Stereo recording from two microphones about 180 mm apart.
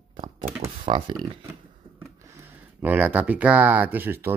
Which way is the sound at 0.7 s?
30° right (ahead or behind).